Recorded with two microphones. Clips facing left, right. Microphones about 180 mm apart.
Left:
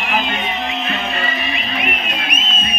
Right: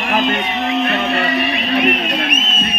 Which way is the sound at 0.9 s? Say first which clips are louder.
Right 6 dB; 70° right (ahead or behind).